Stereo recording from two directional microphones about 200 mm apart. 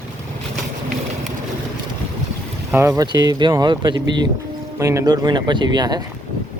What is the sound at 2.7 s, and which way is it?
Speech, 15° right (ahead or behind).